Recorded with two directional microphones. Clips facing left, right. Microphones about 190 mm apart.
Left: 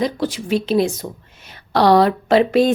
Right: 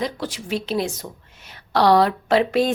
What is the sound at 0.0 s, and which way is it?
Speech, 15° left (ahead or behind).